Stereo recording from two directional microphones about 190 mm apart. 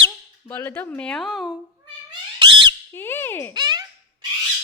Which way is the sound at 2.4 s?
25° right (ahead or behind).